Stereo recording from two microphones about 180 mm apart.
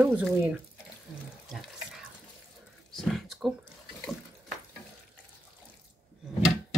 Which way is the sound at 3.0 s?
Centre (ahead or behind).